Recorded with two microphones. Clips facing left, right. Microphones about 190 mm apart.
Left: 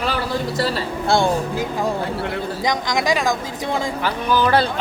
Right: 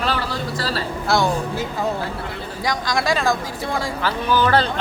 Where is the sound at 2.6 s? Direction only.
20° left (ahead or behind).